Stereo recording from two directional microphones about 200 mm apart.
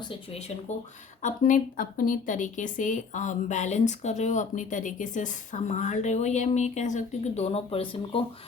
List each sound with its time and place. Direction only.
0.0 s speech: 30° left (ahead or behind)
1.2 s speech: 40° left (ahead or behind)